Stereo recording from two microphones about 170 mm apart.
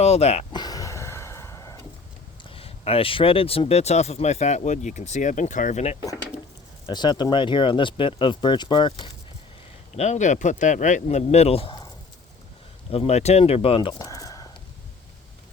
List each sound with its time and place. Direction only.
0.0 s speech: 40° left (ahead or behind)
0.5 s a sound: 20° left (ahead or behind)
2.4 s speech: 35° left (ahead or behind)
6.8 s speech: 25° left (ahead or behind)
9.9 s speech: 40° left (ahead or behind)
12.9 s speech: 40° left (ahead or behind)
14.1 s a sound: 20° left (ahead or behind)